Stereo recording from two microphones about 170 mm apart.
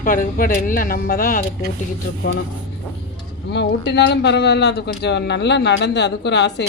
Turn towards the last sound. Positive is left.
turn(degrees=90)